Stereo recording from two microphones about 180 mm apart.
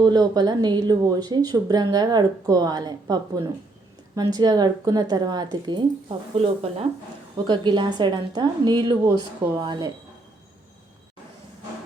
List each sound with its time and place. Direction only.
0.0 s speech: 20° right (ahead or behind)